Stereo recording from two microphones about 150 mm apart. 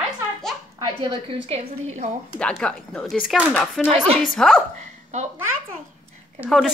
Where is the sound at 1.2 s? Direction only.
35° right (ahead or behind).